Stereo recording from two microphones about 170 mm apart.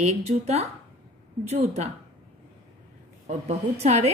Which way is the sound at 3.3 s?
40° right (ahead or behind).